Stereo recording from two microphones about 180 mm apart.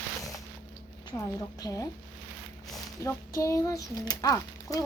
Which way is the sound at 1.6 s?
15° left (ahead or behind).